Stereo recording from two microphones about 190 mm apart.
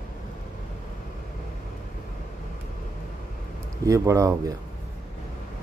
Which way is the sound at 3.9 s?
15° right (ahead or behind).